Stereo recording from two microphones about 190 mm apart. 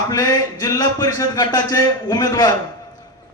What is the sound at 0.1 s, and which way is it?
A man's voice, 20° left (ahead or behind).